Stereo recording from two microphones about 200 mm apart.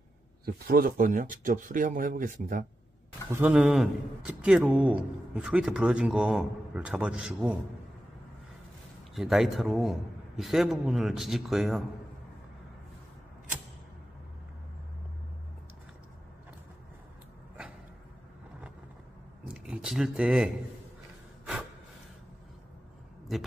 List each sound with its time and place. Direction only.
0.7 s speech: 45° right (ahead or behind)
3.3 s a man's voice: 5° right (ahead or behind)
9.1 s a man's voice: centre (ahead or behind)
19.4 s speech: 5° right (ahead or behind)
23.3 s a man's voice: centre (ahead or behind)